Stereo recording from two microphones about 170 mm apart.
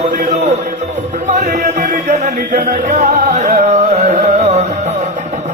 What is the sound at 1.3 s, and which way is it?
Music, 45° right (ahead or behind).